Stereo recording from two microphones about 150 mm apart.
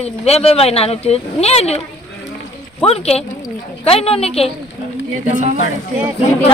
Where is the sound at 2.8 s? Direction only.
45° left (ahead or behind).